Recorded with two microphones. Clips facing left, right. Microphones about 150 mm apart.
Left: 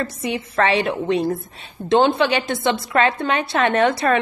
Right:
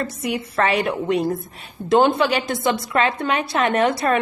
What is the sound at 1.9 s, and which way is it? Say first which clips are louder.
A woman's voice: even; 25° left (ahead or behind).